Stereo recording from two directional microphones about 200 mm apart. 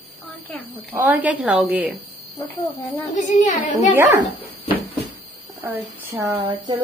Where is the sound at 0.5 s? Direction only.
10° right (ahead or behind).